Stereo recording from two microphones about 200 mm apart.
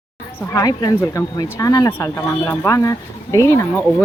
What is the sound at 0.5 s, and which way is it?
Speech, 20° left (ahead or behind).